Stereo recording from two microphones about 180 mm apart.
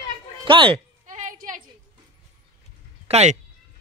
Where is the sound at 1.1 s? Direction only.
45° right (ahead or behind).